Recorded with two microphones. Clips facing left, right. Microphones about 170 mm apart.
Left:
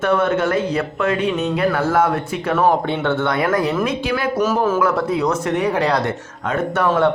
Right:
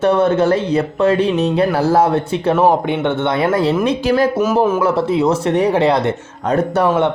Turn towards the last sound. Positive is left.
turn(degrees=-20)  # may be behind; listen again after turning